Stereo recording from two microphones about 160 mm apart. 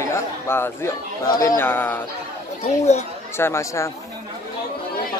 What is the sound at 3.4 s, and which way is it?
Speech, 15° left (ahead or behind).